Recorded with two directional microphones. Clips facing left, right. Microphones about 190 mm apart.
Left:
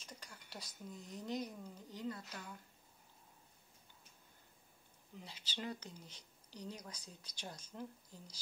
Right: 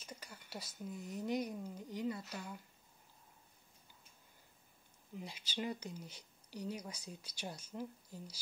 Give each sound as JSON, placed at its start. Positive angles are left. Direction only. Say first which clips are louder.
{"t": 0.0, "sound": "speech", "louder": "right 3 dB", "side_deg": -5}
{"t": 5.2, "sound": "speech", "louder": "right 4 dB", "side_deg": -10}